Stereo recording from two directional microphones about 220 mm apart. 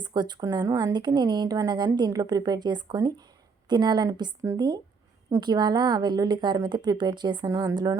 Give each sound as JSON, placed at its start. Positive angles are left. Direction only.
{"t": 0.0, "sound": "speech", "side_deg": -20}